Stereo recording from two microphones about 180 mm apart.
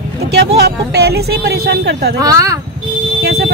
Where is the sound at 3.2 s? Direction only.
65° right (ahead or behind).